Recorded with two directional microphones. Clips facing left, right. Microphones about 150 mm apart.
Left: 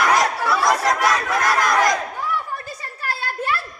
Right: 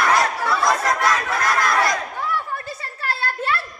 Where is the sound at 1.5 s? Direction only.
15° left (ahead or behind).